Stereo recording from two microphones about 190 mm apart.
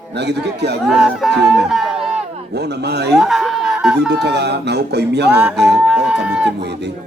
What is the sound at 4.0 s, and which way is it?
Speech, 60° right (ahead or behind).